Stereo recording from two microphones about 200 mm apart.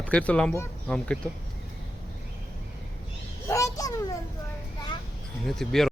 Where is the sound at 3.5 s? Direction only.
15° left (ahead or behind).